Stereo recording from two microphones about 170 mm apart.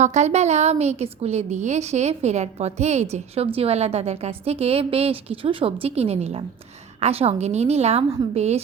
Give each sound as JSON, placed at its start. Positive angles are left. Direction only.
{"t": 0.0, "sound": "a woman's voice", "side_deg": -40}